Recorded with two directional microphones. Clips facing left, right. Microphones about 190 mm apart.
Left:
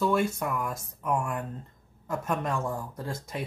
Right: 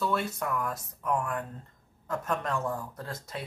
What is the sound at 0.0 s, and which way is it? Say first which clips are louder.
Speech: left 4 dB; 10° left (ahead or behind).